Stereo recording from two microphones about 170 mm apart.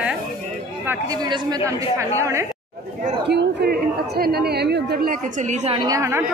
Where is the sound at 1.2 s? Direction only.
25° right (ahead or behind).